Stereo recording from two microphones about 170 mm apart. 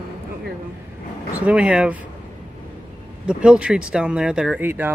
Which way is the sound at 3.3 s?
5° right (ahead or behind).